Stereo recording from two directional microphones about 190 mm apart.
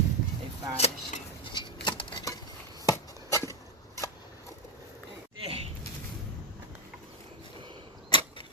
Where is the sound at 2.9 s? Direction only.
15° left (ahead or behind).